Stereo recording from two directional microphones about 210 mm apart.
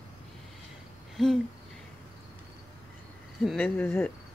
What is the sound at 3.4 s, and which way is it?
Speech, 5° left (ahead or behind).